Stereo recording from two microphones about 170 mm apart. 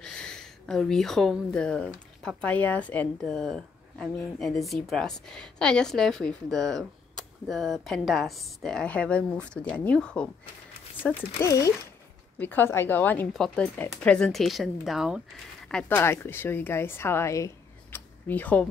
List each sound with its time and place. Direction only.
0.0 s a woman's voice: 5° left (ahead or behind)
15.7 s a woman's voice: 10° left (ahead or behind)
17.9 s a sound: 10° left (ahead or behind)